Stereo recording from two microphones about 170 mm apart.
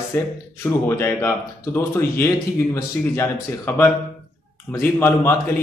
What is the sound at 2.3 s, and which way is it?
Speech, 20° left (ahead or behind).